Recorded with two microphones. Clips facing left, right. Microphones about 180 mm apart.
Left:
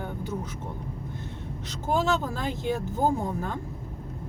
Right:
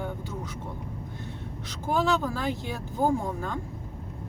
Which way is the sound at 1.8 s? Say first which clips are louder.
Even; 20° left (ahead or behind).